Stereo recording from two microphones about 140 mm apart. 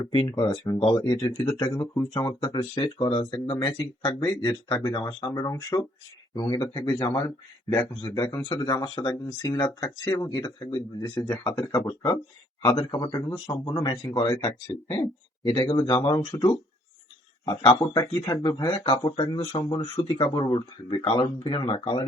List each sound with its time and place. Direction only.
0.0 s speech: 30° left (ahead or behind)
2.0 s speech: 20° left (ahead or behind)
2.4 s speech: 35° left (ahead or behind)
8.4 s speech: 30° left (ahead or behind)
21.3 s speech: 45° left (ahead or behind)